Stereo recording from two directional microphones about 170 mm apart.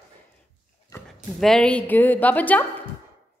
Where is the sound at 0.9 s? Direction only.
20° left (ahead or behind).